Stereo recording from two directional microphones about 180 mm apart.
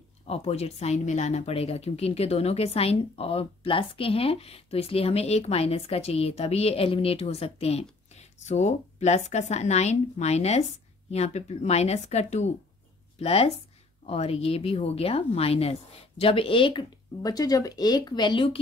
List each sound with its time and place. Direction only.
0.3 s speech: 35° left (ahead or behind)